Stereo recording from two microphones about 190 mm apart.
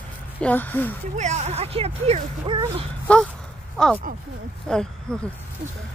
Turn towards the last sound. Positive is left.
turn(degrees=5)  # may be behind; listen again after turning